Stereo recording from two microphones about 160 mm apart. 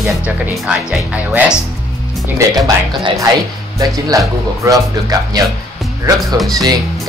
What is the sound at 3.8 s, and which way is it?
Speech, 20° right (ahead or behind).